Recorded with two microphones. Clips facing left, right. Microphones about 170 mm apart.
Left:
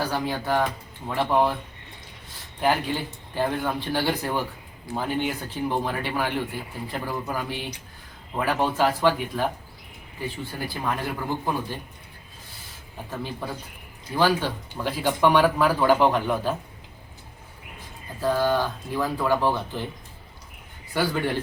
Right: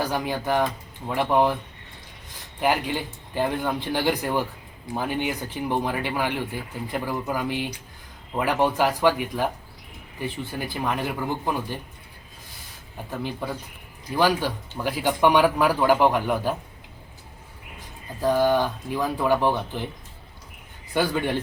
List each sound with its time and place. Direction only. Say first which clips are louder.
0.0 s speech: right 1 dB; 15° right (ahead or behind)
2.6 s speech: even; 15° right (ahead or behind)
14.2 s speech: even; 15° right (ahead or behind)
18.2 s speech: right 2 dB; 15° right (ahead or behind)
20.9 s speech: right 1 dB; 15° right (ahead or behind)